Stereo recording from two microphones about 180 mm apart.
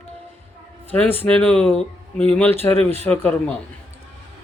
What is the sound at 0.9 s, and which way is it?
Speech, 10° left (ahead or behind).